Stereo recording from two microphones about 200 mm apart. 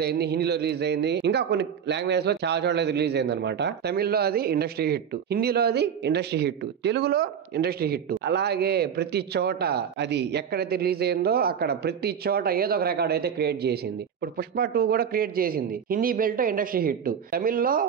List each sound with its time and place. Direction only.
0.0 s a man's voice: 55° right (ahead or behind)